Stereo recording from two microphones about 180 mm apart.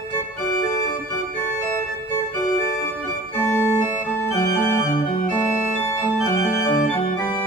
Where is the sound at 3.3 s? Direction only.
15° left (ahead or behind).